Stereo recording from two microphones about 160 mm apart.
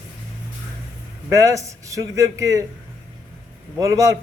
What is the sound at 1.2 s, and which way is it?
A man's voice, 20° right (ahead or behind).